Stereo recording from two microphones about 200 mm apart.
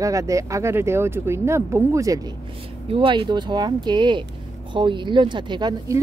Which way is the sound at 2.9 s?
25° right (ahead or behind).